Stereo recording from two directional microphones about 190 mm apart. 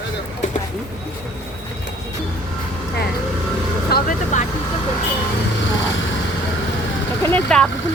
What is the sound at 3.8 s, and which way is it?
Speech, 50° left (ahead or behind).